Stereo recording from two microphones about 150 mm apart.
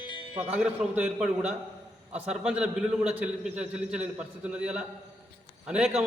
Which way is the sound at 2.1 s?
5° right (ahead or behind).